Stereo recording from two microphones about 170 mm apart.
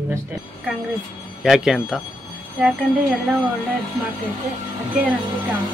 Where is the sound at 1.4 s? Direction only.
5° right (ahead or behind).